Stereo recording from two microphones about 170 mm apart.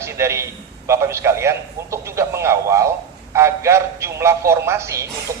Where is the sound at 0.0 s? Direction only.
15° right (ahead or behind).